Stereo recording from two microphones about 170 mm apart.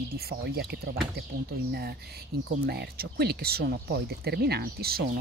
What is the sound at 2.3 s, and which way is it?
Speech, 70° right (ahead or behind).